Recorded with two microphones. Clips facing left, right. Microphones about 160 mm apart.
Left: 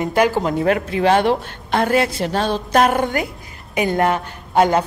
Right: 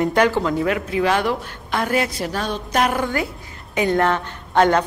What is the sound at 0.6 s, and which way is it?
Speech, 45° left (ahead or behind).